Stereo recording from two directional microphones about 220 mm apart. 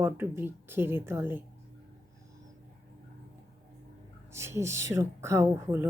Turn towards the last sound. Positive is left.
turn(degrees=-10)  # may be behind; listen again after turning